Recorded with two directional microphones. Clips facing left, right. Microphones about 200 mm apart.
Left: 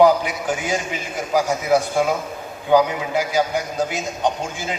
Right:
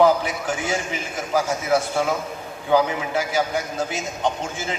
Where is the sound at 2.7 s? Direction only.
15° left (ahead or behind).